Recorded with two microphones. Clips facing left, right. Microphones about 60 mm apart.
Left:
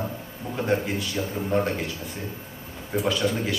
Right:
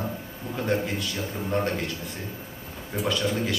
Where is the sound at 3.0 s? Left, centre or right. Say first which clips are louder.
Left 1 dB; centre.